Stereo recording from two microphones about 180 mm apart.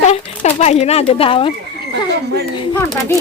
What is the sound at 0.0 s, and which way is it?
Speech, 35° left (ahead or behind).